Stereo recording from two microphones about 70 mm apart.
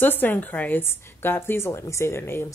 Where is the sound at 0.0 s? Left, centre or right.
Left.